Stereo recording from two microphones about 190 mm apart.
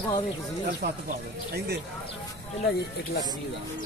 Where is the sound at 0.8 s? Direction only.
55° right (ahead or behind).